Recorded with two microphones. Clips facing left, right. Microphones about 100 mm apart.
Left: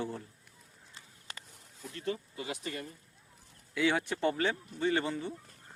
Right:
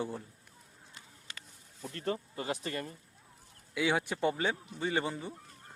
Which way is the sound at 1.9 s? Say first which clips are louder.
Right 1 dB; 45° right (ahead or behind).